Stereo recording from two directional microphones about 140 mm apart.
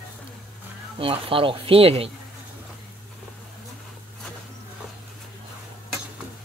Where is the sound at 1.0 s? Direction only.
40° right (ahead or behind).